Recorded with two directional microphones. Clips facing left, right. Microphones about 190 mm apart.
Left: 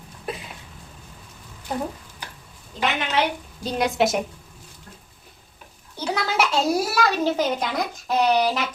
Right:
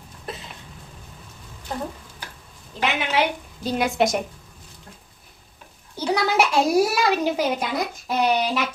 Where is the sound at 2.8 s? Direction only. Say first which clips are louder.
Right 1 dB; 10° right (ahead or behind).